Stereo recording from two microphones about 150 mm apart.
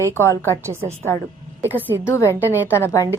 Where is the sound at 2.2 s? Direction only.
15° right (ahead or behind).